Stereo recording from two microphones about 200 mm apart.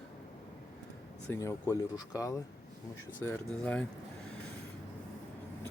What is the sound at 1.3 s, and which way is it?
Speech, 15° left (ahead or behind).